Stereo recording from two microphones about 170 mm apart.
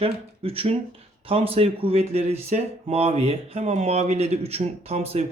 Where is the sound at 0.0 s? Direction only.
35° right (ahead or behind).